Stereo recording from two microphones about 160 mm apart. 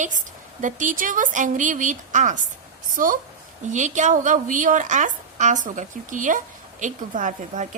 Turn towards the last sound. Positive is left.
turn(degrees=-50)  # may be behind; listen again after turning